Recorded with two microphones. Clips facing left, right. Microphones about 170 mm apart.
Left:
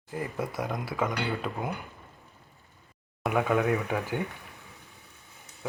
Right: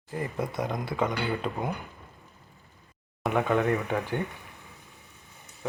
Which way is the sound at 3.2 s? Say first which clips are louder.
Right 1 dB; 5° left (ahead or behind).